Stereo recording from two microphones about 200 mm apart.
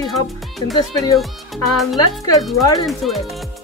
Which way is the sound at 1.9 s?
20° left (ahead or behind).